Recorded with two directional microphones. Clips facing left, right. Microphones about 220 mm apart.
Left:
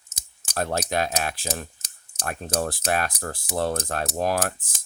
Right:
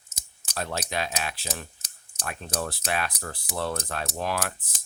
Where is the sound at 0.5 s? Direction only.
45° left (ahead or behind).